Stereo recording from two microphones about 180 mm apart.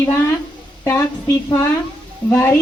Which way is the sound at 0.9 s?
15° left (ahead or behind).